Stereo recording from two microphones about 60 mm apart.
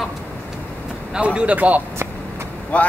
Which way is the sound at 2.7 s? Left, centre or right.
Left.